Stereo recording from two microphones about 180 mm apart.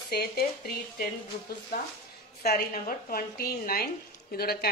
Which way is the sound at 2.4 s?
60° left (ahead or behind).